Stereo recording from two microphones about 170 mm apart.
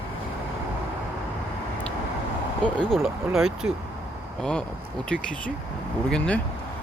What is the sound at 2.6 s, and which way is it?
Speech, 5° left (ahead or behind).